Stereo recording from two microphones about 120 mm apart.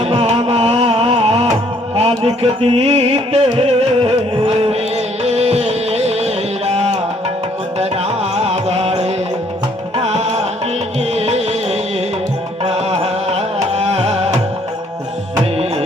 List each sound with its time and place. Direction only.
0.0 s music: 55° right (ahead or behind)
8.4 s carnatic music: 60° right (ahead or behind)
10.0 s music: 60° right (ahead or behind)
12.6 s carnatic music: 60° right (ahead or behind)